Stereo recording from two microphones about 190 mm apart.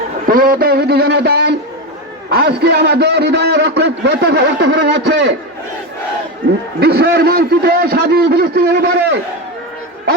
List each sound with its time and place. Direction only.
0.3 s a sound: 50° right (ahead or behind)
2.3 s a man's voice: 55° right (ahead or behind)
6.7 s a man's voice: 55° right (ahead or behind)